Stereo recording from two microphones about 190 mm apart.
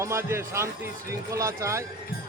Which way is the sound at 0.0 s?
15° right (ahead or behind).